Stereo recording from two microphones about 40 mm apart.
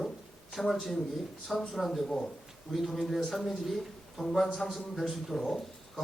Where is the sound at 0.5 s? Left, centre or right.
Centre.